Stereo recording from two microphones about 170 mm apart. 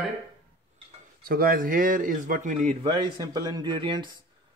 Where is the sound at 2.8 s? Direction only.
25° right (ahead or behind).